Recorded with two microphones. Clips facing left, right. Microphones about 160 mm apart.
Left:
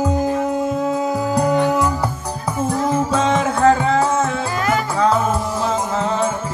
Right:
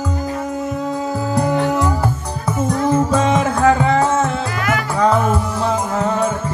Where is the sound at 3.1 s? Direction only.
10° right (ahead or behind).